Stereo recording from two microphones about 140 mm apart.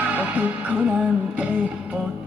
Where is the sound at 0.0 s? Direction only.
10° right (ahead or behind).